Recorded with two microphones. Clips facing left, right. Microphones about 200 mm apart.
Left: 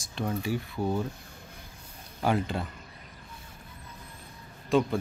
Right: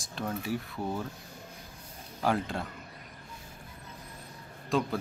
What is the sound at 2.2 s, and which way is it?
Speech, centre (ahead or behind).